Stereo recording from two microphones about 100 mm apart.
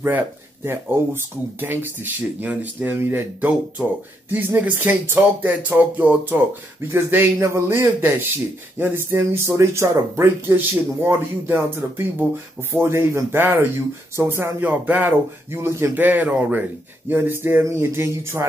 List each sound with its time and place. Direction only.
0.7 s speech: 20° right (ahead or behind)